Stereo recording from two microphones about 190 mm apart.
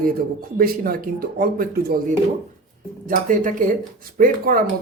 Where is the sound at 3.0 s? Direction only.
45° right (ahead or behind).